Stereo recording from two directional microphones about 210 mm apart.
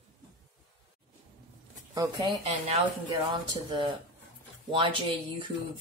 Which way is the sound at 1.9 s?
20° right (ahead or behind).